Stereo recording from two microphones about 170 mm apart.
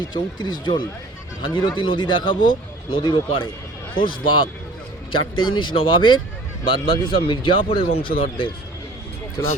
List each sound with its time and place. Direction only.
0.1 s speech: 25° left (ahead or behind)
4.0 s speech: 55° left (ahead or behind)
5.1 s speech: 30° left (ahead or behind)
9.4 s speech: 20° left (ahead or behind)